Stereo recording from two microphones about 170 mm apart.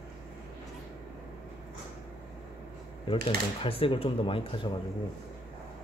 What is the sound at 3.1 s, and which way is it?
Speech, 30° left (ahead or behind).